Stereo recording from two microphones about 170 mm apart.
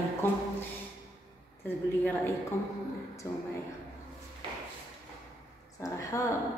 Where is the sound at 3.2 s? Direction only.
15° left (ahead or behind).